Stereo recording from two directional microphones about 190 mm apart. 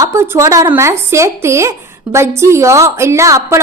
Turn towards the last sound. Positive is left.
turn(degrees=-15)  # may be behind; listen again after turning